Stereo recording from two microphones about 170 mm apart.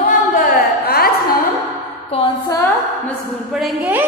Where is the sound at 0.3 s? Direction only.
55° left (ahead or behind).